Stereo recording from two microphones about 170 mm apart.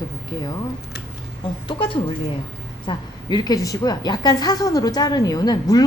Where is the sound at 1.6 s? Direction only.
30° left (ahead or behind).